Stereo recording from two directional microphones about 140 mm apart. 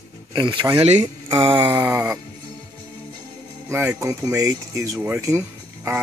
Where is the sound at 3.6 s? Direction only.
20° right (ahead or behind).